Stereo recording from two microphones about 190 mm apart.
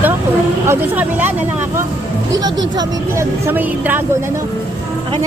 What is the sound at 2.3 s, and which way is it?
Speech, 20° right (ahead or behind).